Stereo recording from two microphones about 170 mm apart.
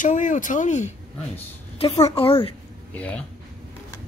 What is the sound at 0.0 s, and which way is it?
A woman's voice, 50° left (ahead or behind).